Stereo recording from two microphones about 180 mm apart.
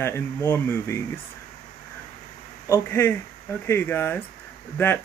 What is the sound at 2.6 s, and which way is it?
Speech, 15° left (ahead or behind).